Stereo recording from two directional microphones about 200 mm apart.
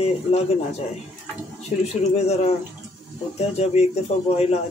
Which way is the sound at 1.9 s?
30° left (ahead or behind).